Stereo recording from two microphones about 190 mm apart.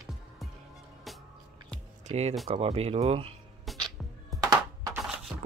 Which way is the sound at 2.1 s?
30° right (ahead or behind).